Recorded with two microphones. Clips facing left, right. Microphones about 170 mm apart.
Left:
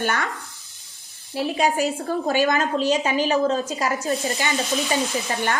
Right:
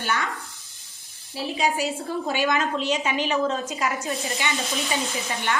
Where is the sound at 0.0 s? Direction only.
50° left (ahead or behind).